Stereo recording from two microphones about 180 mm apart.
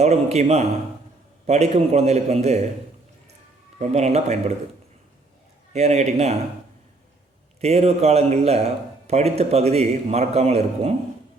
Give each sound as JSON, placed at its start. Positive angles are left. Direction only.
{"t": 0.0, "sound": "a man's voice", "side_deg": -35}
{"t": 3.8, "sound": "a man's voice", "side_deg": -35}
{"t": 5.7, "sound": "a man's voice", "side_deg": -40}
{"t": 7.6, "sound": "a man's voice", "side_deg": -35}